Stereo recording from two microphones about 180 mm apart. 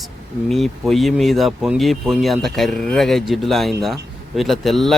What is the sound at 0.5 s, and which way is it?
Speech, centre (ahead or behind).